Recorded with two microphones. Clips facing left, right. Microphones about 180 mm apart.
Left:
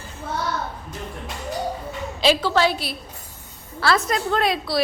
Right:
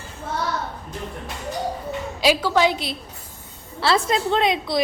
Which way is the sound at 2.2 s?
10° right (ahead or behind).